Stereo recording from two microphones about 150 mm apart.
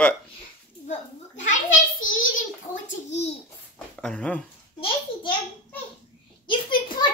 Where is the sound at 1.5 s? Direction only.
60° left (ahead or behind).